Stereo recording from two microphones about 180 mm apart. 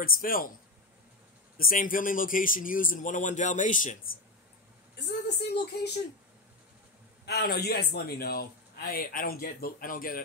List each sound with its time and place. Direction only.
0.0 s a man's voice: 50° left (ahead or behind)
1.6 s a man's voice: 50° left (ahead or behind)
5.4 s speech: 65° left (ahead or behind)
7.2 s a man's voice: 65° left (ahead or behind)